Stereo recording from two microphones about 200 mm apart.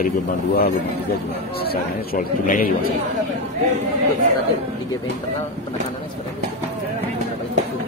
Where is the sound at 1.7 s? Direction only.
40° left (ahead or behind).